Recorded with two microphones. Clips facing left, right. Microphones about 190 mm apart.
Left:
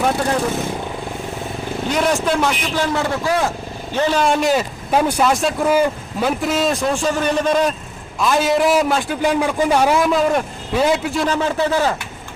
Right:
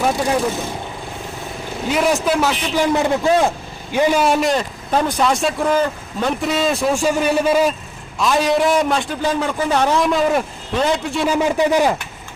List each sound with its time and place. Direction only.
1.9 s a man's voice: 5° right (ahead or behind)
2.8 s a man's voice: 15° right (ahead or behind)
3.9 s a man's voice: 10° right (ahead or behind)
11.3 s speech: 15° right (ahead or behind)